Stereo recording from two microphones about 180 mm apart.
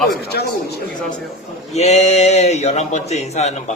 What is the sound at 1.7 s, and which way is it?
A man's voice, 35° left (ahead or behind).